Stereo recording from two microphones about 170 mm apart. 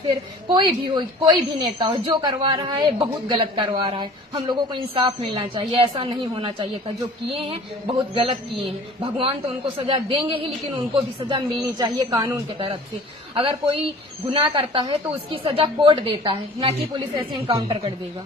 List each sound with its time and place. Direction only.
0.0 s a woman's voice: 30° right (ahead or behind)
9.7 s a woman's voice: 30° right (ahead or behind)